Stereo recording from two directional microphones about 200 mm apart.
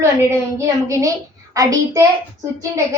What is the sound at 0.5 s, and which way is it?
A child's voice, 15° right (ahead or behind).